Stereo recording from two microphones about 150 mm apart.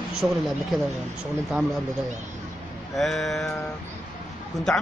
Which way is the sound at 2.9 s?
Centre (ahead or behind).